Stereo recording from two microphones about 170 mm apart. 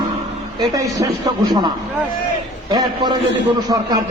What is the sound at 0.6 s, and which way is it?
A man's voice, 20° right (ahead or behind).